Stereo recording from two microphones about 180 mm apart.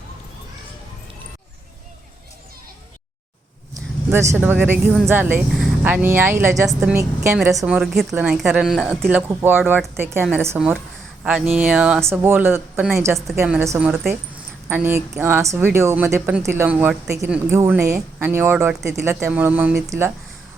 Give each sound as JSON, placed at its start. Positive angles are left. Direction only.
{"t": 4.1, "sound": "a woman's voice", "side_deg": -15}
{"t": 13.4, "sound": "a woman's voice", "side_deg": -5}